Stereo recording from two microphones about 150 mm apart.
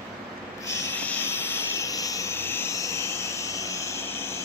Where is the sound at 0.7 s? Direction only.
15° left (ahead or behind).